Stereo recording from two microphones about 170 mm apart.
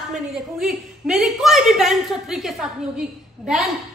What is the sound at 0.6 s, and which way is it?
A woman's voice, 5° right (ahead or behind).